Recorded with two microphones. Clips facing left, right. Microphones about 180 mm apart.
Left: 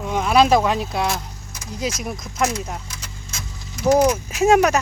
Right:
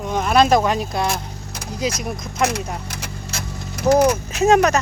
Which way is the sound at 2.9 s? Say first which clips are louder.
Right 7 dB; 65° right (ahead or behind).